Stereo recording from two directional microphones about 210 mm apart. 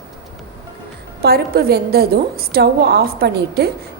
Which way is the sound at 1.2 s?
50° right (ahead or behind).